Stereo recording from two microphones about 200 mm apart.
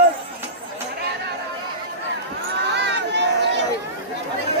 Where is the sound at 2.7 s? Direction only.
60° right (ahead or behind).